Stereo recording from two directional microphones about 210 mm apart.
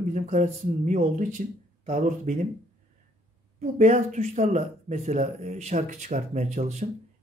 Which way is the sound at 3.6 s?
35° right (ahead or behind).